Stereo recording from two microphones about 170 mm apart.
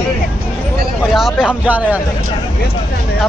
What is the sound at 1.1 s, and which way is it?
Speech, centre (ahead or behind).